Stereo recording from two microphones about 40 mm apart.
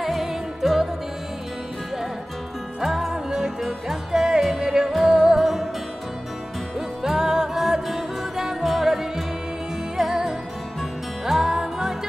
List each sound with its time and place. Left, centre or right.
0.0 s music: centre
2.8 s music: centre
3.1 s music: centre
7.0 s music: centre
11.5 s music: centre